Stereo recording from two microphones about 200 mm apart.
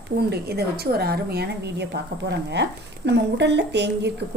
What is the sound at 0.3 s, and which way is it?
A woman's voice, 55° right (ahead or behind).